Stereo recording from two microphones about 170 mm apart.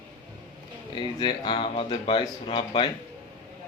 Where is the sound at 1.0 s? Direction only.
30° left (ahead or behind).